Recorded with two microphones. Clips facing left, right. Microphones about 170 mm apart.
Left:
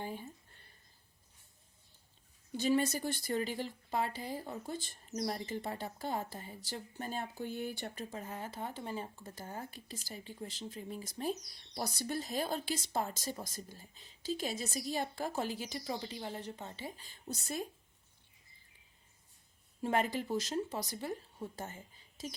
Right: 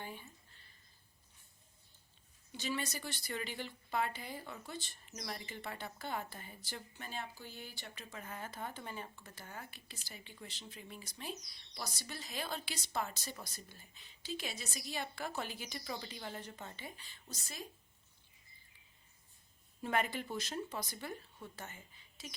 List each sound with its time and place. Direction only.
0.0 s a sound: 40° left (ahead or behind)
2.5 s speech: 45° left (ahead or behind)
8.1 s speech: 25° left (ahead or behind)
17.2 s a woman's voice: 55° left (ahead or behind)
19.8 s speech: 35° left (ahead or behind)